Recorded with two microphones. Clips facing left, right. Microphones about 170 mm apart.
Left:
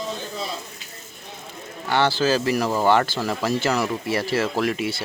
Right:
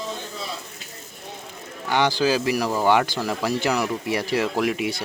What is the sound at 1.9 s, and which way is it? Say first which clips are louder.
Speech: even; 15° right (ahead or behind).